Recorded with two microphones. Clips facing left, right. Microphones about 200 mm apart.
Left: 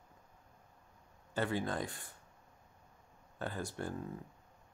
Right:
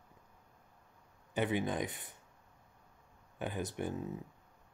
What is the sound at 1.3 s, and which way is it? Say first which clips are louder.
Speech: right 2 dB; 20° right (ahead or behind).